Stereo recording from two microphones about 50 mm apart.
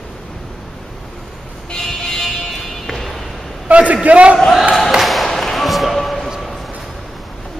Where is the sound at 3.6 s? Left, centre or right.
Right.